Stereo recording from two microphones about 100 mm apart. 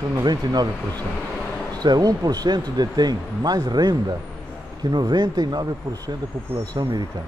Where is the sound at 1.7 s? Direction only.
40° right (ahead or behind).